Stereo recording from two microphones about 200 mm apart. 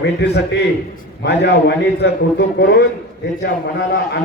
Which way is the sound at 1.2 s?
60° left (ahead or behind).